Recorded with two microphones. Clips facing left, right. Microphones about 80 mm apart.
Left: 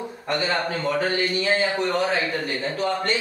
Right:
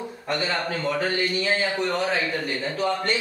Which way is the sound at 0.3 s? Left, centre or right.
Centre.